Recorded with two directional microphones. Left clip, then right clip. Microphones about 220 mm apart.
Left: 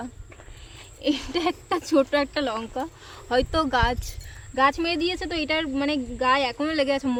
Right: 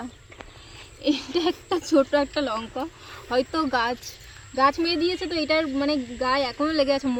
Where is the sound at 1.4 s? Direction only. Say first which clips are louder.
Left 1 dB; 10° left (ahead or behind).